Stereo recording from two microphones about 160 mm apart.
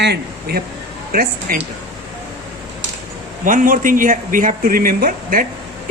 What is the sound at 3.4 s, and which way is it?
Speech, 55° right (ahead or behind).